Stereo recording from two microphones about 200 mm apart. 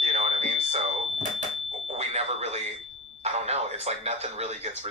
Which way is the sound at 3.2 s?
30° right (ahead or behind).